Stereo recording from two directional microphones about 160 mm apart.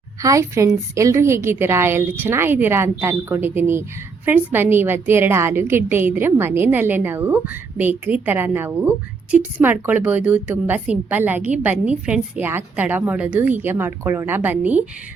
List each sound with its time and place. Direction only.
0.2 s a woman's voice: 20° right (ahead or behind)